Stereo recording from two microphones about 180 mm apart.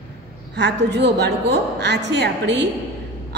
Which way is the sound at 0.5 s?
70° right (ahead or behind).